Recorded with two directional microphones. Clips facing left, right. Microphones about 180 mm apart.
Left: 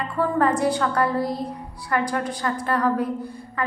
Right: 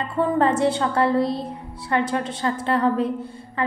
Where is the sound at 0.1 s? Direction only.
25° right (ahead or behind).